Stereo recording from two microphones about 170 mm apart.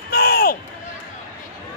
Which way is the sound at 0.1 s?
65° left (ahead or behind).